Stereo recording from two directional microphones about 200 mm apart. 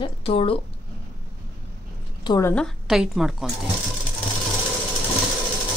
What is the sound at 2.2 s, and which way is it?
A woman's voice, 15° left (ahead or behind).